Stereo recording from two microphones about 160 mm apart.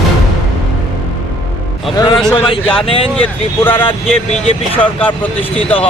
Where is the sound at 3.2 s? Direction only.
10° left (ahead or behind).